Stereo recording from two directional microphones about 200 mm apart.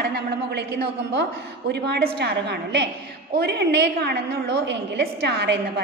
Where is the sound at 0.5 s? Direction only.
55° right (ahead or behind).